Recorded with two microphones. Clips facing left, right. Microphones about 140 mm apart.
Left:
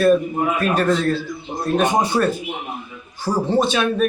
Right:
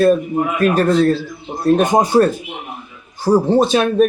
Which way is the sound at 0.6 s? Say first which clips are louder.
Right 7 dB; 40° right (ahead or behind).